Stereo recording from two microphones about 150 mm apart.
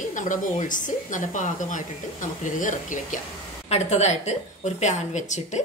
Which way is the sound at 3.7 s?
50° left (ahead or behind).